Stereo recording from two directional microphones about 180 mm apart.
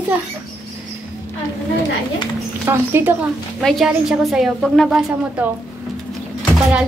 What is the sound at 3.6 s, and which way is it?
A woman's voice, centre (ahead or behind).